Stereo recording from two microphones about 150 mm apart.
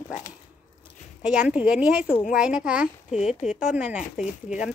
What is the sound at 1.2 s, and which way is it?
A woman's voice, 5° right (ahead or behind).